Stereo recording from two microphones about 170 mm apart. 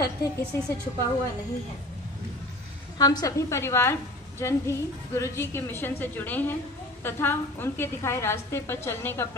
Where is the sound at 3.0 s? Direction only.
20° left (ahead or behind).